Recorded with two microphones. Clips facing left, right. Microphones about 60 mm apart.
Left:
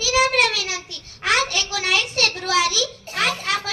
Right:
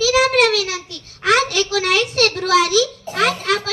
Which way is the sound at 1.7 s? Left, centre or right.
Right.